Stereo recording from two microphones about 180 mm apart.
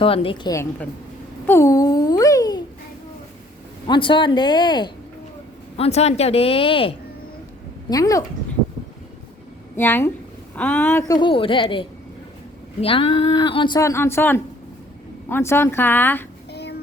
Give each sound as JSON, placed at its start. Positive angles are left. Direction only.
{"t": 0.0, "sound": "a woman's voice", "side_deg": 30}
{"t": 0.5, "sound": "a woman's voice", "side_deg": 15}
{"t": 1.5, "sound": "a sound", "side_deg": 15}
{"t": 3.8, "sound": "a woman's voice", "side_deg": 25}
{"t": 7.9, "sound": "a woman's voice", "side_deg": 20}
{"t": 9.7, "sound": "a woman's voice", "side_deg": 10}
{"t": 11.2, "sound": "a woman's voice", "side_deg": 30}
{"t": 16.5, "sound": "a sound", "side_deg": 70}